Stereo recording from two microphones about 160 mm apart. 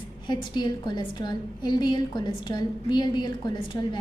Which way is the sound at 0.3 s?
25° left (ahead or behind).